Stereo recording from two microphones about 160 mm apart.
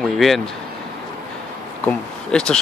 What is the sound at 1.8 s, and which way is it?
Speech, 5° left (ahead or behind).